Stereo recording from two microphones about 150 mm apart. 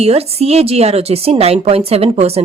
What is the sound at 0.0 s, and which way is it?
A woman's voice, 45° right (ahead or behind).